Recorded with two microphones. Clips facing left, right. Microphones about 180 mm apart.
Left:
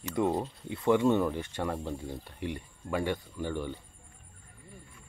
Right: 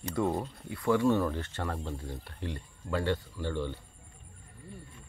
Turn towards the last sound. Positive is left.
turn(degrees=15)  # may be behind; listen again after turning